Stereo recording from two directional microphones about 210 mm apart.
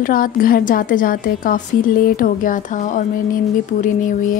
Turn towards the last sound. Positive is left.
turn(degrees=40)  # may be behind; listen again after turning